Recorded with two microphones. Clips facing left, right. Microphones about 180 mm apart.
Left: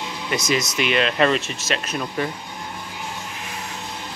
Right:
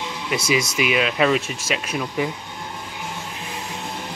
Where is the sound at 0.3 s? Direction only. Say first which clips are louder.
Right 1 dB; 10° right (ahead or behind).